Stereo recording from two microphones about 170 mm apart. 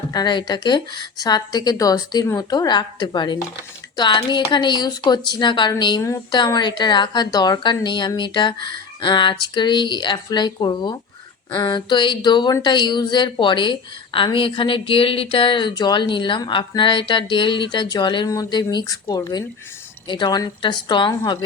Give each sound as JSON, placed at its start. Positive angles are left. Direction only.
{"t": 0.1, "sound": "speech", "side_deg": 25}